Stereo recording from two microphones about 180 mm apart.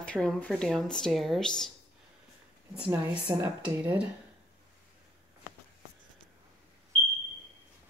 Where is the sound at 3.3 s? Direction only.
15° right (ahead or behind).